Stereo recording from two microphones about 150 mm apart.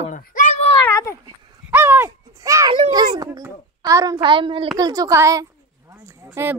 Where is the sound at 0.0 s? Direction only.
60° left (ahead or behind).